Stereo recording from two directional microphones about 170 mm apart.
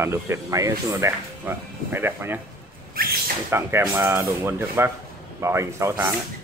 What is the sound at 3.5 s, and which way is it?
Speech, 15° right (ahead or behind).